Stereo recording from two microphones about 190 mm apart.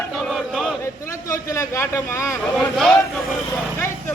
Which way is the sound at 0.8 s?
15° left (ahead or behind).